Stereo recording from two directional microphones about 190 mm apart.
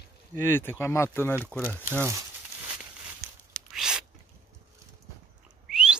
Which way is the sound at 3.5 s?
5° right (ahead or behind).